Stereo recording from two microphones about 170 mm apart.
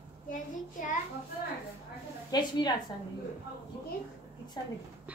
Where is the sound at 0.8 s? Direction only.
50° left (ahead or behind).